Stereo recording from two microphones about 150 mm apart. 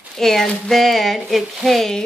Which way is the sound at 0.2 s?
5° left (ahead or behind).